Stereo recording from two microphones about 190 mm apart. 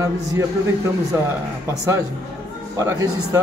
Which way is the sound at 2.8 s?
15° right (ahead or behind).